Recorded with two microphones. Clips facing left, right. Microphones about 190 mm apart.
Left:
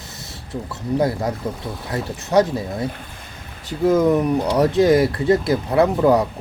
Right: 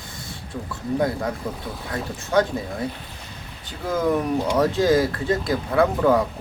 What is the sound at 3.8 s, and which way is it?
Speech, 20° left (ahead or behind).